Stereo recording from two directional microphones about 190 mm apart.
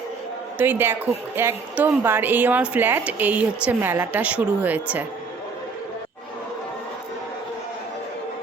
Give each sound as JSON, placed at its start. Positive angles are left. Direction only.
{"t": 0.6, "sound": "speech", "side_deg": -10}